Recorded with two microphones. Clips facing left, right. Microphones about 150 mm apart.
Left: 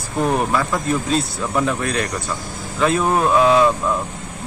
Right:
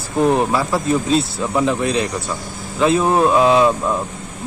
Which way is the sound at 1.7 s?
25° right (ahead or behind).